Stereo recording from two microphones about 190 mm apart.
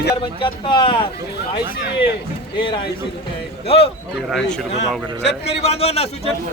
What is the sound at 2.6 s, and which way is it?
A man's voice, 25° left (ahead or behind).